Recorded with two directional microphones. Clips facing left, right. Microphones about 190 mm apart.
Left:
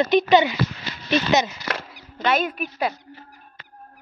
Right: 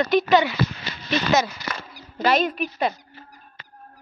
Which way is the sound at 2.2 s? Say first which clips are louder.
Right 2 dB; 5° left (ahead or behind).